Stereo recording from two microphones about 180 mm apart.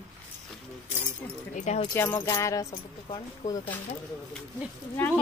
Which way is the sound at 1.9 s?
10° left (ahead or behind).